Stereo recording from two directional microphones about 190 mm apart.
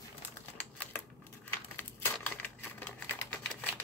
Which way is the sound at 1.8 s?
10° left (ahead or behind).